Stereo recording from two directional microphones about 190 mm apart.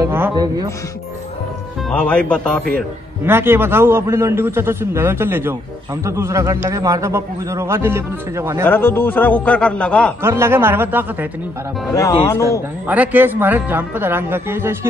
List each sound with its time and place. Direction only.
0.0 s a sound: 15° right (ahead or behind)
1.9 s speech: 5° left (ahead or behind)
3.3 s a man's voice: 10° right (ahead or behind)
8.6 s a man's voice: 10° left (ahead or behind)
10.2 s a man's voice: 15° right (ahead or behind)
11.9 s speech: 20° left (ahead or behind)
12.8 s a man's voice: 10° right (ahead or behind)